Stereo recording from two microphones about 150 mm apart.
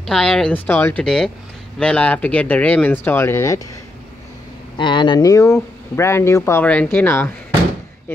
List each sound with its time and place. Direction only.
0.0 s speech: 5° left (ahead or behind)
1.0 s speech: 5° left (ahead or behind); by 3.6 s 20° left (ahead or behind)
4.7 s speech: 30° left (ahead or behind); by 7.3 s 15° left (ahead or behind)